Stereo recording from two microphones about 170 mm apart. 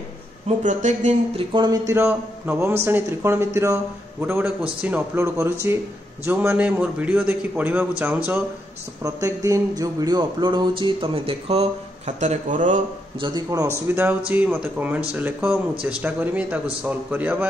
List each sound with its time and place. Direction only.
0.7 s speech: 45° right (ahead or behind)
1.5 s a man's voice: 25° right (ahead or behind)
12.2 s speech: 45° right (ahead or behind)
13.2 s a man's voice: 20° right (ahead or behind)